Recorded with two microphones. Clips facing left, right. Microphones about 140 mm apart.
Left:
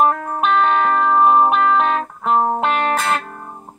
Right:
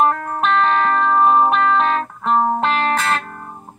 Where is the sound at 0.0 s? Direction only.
5° left (ahead or behind).